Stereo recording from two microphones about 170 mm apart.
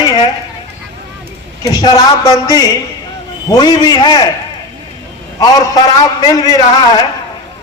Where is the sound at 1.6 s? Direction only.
20° left (ahead or behind).